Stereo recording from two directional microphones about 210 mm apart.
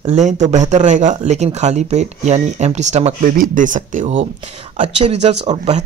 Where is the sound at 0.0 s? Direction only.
35° right (ahead or behind).